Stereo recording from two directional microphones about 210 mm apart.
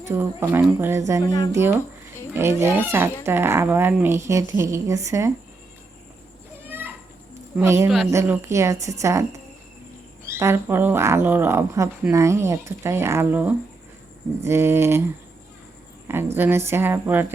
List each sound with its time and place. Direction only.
0.0 s speech: 10° right (ahead or behind)
1.2 s speech: 20° left (ahead or behind)
2.3 s speech: 15° right (ahead or behind)
6.7 s a sound: 10° right (ahead or behind)
7.5 s speech: 10° right (ahead or behind)
16.0 s speech: 10° right (ahead or behind)